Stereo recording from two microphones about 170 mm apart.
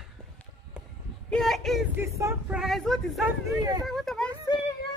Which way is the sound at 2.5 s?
Centre (ahead or behind).